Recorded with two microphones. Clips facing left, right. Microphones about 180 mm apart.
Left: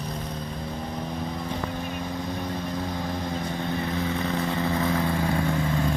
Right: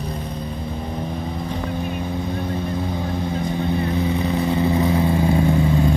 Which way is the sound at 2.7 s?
5° right (ahead or behind).